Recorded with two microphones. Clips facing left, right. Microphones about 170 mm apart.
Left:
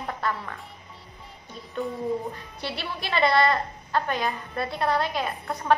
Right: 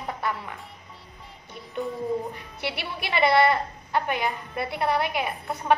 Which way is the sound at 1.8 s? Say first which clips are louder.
Even; centre (ahead or behind).